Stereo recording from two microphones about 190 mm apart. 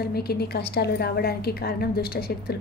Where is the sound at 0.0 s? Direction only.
55° left (ahead or behind).